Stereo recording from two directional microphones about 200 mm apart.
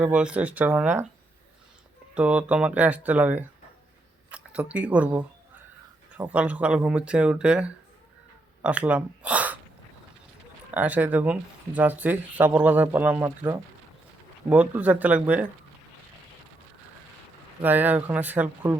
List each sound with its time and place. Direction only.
0.0 s speech: 5° right (ahead or behind)
2.1 s speech: 5° right (ahead or behind)
10.7 s speech: 5° right (ahead or behind)
17.6 s speech: 10° right (ahead or behind)